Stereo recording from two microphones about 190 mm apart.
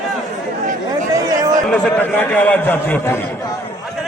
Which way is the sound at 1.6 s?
5° left (ahead or behind).